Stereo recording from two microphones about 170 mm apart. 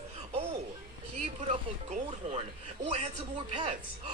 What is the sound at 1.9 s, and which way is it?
A man's voice, 45° right (ahead or behind).